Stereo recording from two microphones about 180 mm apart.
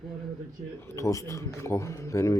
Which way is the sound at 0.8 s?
15° left (ahead or behind).